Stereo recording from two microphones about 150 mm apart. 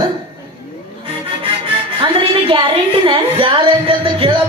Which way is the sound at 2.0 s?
35° right (ahead or behind).